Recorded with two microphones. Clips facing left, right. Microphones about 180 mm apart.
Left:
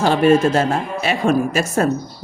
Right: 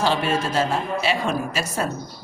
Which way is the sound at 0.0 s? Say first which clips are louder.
Left 8 dB; 50° left (ahead or behind).